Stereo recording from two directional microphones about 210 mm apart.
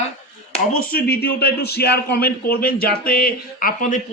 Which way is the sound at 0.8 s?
50° left (ahead or behind).